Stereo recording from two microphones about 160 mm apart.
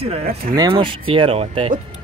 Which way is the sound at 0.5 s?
25° right (ahead or behind).